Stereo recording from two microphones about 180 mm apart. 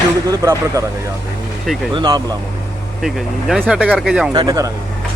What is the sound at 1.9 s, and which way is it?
Speech, 25° right (ahead or behind).